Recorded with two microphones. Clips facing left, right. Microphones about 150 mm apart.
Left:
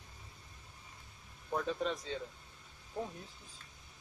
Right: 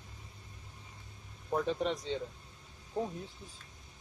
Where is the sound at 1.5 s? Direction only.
20° right (ahead or behind).